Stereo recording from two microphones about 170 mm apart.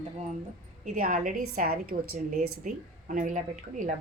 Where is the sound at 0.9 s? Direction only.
55° right (ahead or behind).